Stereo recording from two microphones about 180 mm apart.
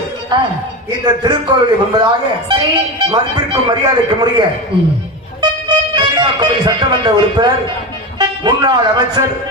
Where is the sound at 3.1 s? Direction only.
25° right (ahead or behind).